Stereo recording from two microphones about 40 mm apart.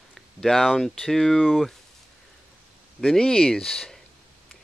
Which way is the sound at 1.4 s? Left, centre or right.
Centre.